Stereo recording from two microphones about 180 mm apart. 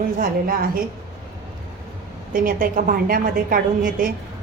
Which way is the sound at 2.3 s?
50° right (ahead or behind).